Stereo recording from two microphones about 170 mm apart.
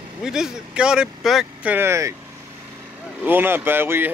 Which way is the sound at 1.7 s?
15° right (ahead or behind).